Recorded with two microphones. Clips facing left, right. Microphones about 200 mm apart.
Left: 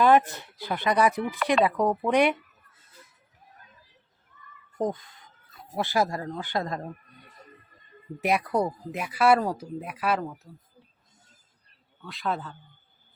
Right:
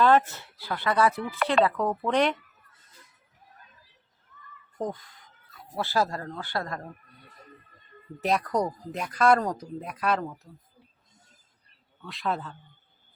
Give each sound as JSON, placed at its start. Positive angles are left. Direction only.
{"t": 0.0, "sound": "speech", "side_deg": 15}
{"t": 4.8, "sound": "speech", "side_deg": 15}
{"t": 8.2, "sound": "speech", "side_deg": 10}
{"t": 12.0, "sound": "a man's voice", "side_deg": 0}